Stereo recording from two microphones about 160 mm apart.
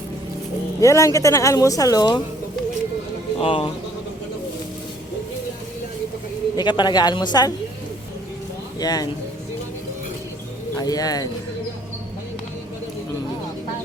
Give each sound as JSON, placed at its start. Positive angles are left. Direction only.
{"t": 0.8, "sound": "speech", "side_deg": 20}
{"t": 3.4, "sound": "speech", "side_deg": 35}
{"t": 6.6, "sound": "speech", "side_deg": 30}
{"t": 8.8, "sound": "speech", "side_deg": 25}
{"t": 10.8, "sound": "speech", "side_deg": 25}